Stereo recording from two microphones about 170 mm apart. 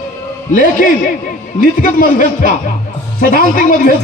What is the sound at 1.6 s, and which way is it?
A man's voice, 55° left (ahead or behind).